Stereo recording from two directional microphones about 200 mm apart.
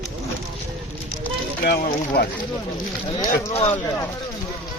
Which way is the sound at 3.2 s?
30° left (ahead or behind).